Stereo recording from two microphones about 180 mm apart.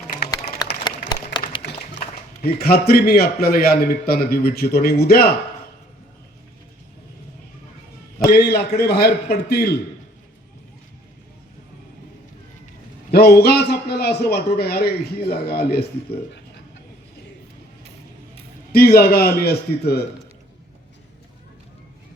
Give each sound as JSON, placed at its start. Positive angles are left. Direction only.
{"t": 0.9, "sound": "applause", "side_deg": 25}
{"t": 2.4, "sound": "a man's voice", "side_deg": 60}
{"t": 8.2, "sound": "a man's voice", "side_deg": 60}
{"t": 13.1, "sound": "a man's voice", "side_deg": 60}
{"t": 18.7, "sound": "a man's voice", "side_deg": 60}